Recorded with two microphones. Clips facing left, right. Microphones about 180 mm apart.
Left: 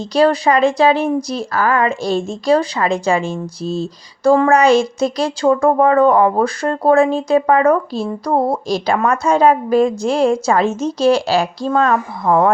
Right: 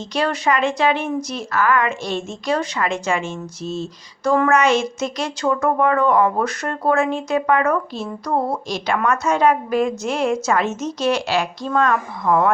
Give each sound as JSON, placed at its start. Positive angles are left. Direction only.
{"t": 0.1, "sound": "speech", "side_deg": 35}